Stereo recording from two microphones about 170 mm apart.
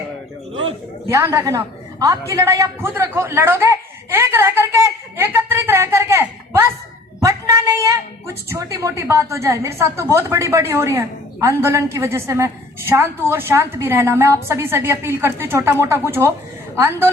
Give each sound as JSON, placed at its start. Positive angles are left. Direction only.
{"t": 1.0, "sound": "a woman's voice", "side_deg": -15}
{"t": 5.1, "sound": "a sound", "side_deg": -15}
{"t": 7.8, "sound": "a woman's voice", "side_deg": -20}